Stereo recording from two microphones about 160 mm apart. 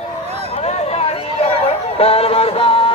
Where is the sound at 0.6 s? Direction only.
40° left (ahead or behind).